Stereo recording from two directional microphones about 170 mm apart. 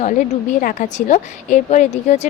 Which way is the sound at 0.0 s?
50° left (ahead or behind).